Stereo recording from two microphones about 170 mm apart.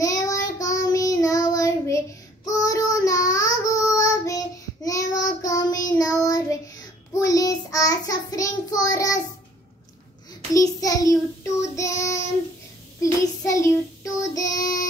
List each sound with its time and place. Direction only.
0.0 s child singing: 20° left (ahead or behind)
7.2 s child singing: 20° left (ahead or behind)
10.5 s child singing: 20° left (ahead or behind)